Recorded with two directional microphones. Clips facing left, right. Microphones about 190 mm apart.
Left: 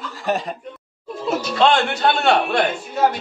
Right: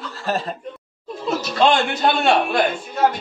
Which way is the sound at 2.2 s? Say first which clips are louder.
Even; 5° right (ahead or behind).